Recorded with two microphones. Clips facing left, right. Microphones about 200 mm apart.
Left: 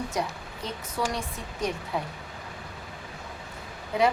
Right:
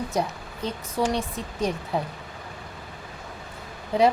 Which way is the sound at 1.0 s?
30° right (ahead or behind).